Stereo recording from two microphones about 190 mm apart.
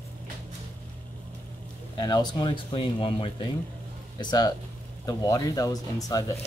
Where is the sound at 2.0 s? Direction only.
20° left (ahead or behind).